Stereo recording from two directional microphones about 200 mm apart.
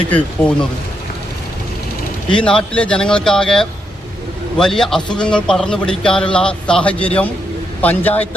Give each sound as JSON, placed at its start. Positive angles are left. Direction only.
{"t": 0.1, "sound": "a man's voice", "side_deg": 5}
{"t": 2.3, "sound": "a man's voice", "side_deg": 5}